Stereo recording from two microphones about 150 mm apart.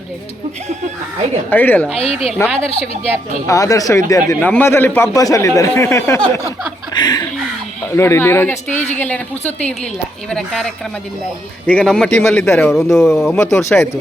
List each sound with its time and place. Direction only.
1.5 s a man's voice: 10° left (ahead or behind)
2.0 s a woman's voice: 45° left (ahead or behind)
3.4 s a man's voice: 20° left (ahead or behind)
7.9 s a man's voice: 15° left (ahead or behind)
10.2 s a man's voice: 5° left (ahead or behind)
12.7 s speech: centre (ahead or behind)
13.4 s a man's voice: 15° left (ahead or behind)